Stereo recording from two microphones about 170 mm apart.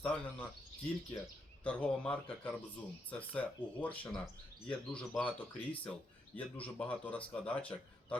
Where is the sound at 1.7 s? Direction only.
5° left (ahead or behind).